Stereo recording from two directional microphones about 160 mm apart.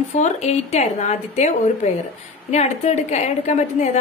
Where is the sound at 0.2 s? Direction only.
45° left (ahead or behind).